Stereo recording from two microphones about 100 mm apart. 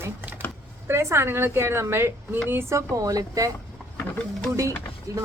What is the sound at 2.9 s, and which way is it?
Speech, 35° right (ahead or behind).